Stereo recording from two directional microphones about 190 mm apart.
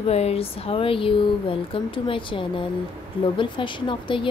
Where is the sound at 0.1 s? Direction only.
35° left (ahead or behind).